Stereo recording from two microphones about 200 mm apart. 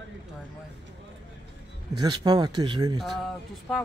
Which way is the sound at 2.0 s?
20° right (ahead or behind).